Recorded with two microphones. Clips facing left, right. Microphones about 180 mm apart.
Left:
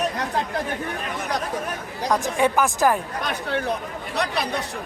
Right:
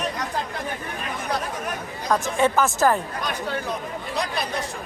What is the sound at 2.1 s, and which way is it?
Speech, 15° left (ahead or behind).